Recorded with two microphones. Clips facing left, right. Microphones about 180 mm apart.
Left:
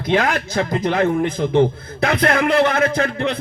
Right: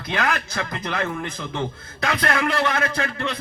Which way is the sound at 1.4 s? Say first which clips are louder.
Left 12 dB; 40° left (ahead or behind).